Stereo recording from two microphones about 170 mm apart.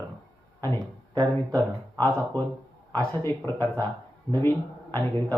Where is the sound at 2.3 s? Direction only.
15° left (ahead or behind).